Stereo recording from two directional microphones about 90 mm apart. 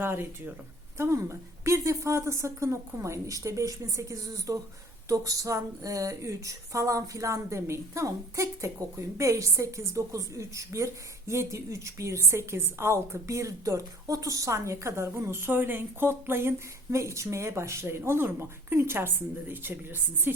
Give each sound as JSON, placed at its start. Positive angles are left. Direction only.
{"t": 0.0, "sound": "a woman's voice", "side_deg": -25}